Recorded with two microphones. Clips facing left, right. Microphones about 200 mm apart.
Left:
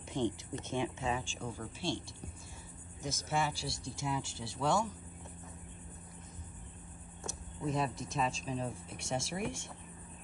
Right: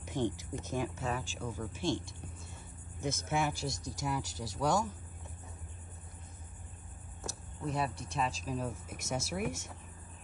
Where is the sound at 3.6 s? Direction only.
45° right (ahead or behind).